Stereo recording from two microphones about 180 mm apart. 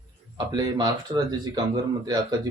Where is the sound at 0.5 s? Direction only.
20° right (ahead or behind).